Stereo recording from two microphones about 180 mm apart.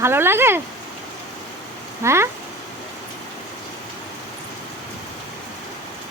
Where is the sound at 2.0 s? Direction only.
15° right (ahead or behind).